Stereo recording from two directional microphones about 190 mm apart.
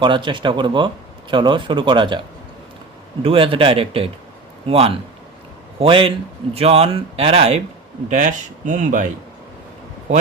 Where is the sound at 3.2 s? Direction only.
30° right (ahead or behind).